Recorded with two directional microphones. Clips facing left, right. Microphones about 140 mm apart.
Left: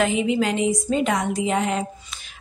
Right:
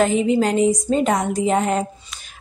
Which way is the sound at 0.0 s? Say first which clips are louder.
Right 4 dB; 40° right (ahead or behind).